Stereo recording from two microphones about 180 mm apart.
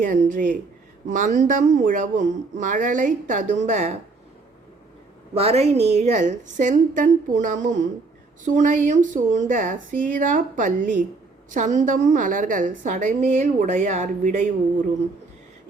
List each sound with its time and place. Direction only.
0.0 s a woman's voice: 45° right (ahead or behind)
5.3 s a woman's voice: 35° right (ahead or behind)